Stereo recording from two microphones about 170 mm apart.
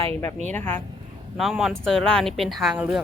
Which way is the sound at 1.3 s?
Centre (ahead or behind).